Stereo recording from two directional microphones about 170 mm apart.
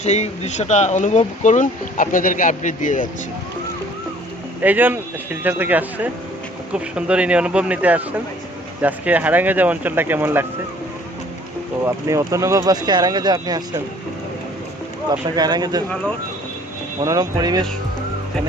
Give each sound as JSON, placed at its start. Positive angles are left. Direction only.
{"t": 0.0, "sound": "speech", "side_deg": 40}
{"t": 4.6, "sound": "speech", "side_deg": -10}
{"t": 11.9, "sound": "speech", "side_deg": -20}
{"t": 15.4, "sound": "speech", "side_deg": -25}
{"t": 17.0, "sound": "speech", "side_deg": -25}